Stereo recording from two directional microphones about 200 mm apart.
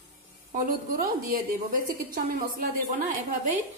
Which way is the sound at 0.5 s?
40° right (ahead or behind).